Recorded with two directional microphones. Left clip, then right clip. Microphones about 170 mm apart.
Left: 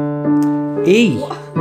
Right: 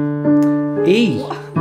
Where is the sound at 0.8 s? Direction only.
15° left (ahead or behind).